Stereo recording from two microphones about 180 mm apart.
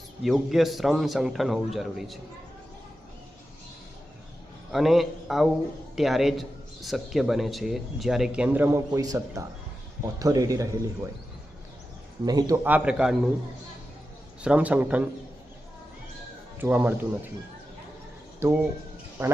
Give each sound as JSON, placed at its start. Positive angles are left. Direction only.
{"t": 0.2, "sound": "speech", "side_deg": 0}
{"t": 4.7, "sound": "speech", "side_deg": 0}
{"t": 12.2, "sound": "speech", "side_deg": -20}
{"t": 12.6, "sound": "speech", "side_deg": -10}
{"t": 14.4, "sound": "speech", "side_deg": -5}
{"t": 16.6, "sound": "speech", "side_deg": -10}
{"t": 18.3, "sound": "speech", "side_deg": -15}